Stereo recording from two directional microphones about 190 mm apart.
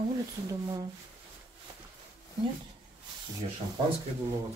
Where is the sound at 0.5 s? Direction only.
20° right (ahead or behind).